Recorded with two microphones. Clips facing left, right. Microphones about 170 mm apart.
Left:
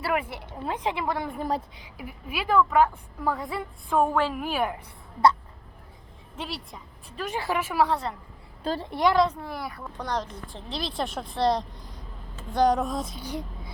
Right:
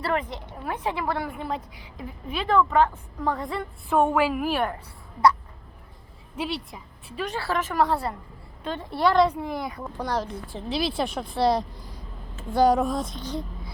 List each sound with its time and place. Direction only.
0.0 s a woman's voice: 10° left (ahead or behind)
1.4 s a woman's voice: 35° left (ahead or behind)
2.0 s a woman's voice: 10° left (ahead or behind)
6.3 s a woman's voice: 5° right (ahead or behind)
7.3 s a woman's voice: 15° left (ahead or behind)
8.6 s a woman's voice: 35° left (ahead or behind)
8.9 s a woman's voice: 15° left (ahead or behind)
9.1 s speech: 10° right (ahead or behind)
10.0 s a woman's voice: 5° right (ahead or behind); by 13.7 s 10° left (ahead or behind)